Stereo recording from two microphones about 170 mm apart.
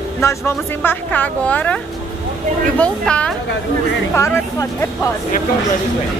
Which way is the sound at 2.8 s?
5° left (ahead or behind).